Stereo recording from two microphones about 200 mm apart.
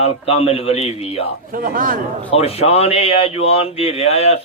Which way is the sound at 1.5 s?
45° right (ahead or behind).